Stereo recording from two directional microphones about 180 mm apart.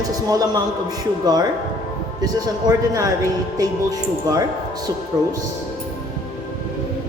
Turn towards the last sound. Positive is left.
turn(degrees=-20)  # may be behind; listen again after turning